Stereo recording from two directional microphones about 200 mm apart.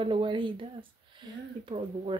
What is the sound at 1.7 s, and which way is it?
Speech, 30° right (ahead or behind).